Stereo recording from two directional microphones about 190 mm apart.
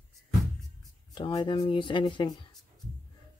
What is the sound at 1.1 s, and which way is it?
Speech, 25° left (ahead or behind).